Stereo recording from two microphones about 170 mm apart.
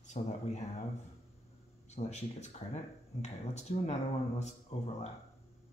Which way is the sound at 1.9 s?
40° left (ahead or behind).